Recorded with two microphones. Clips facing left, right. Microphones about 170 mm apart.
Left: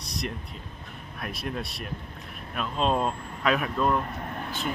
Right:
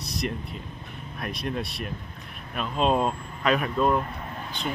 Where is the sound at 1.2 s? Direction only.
Centre (ahead or behind).